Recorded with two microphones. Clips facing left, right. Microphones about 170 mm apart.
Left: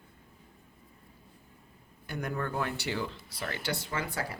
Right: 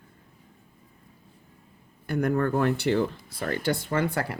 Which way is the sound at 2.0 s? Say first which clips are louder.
Right 10 dB; 55° right (ahead or behind).